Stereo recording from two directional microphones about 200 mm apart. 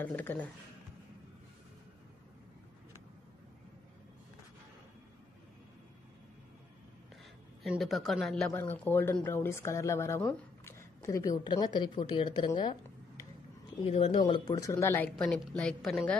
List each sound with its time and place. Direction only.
0.0 s speech: 10° left (ahead or behind)
7.6 s speech: centre (ahead or behind); by 12.7 s 25° left (ahead or behind)
13.8 s speech: 30° left (ahead or behind); by 16.2 s centre (ahead or behind)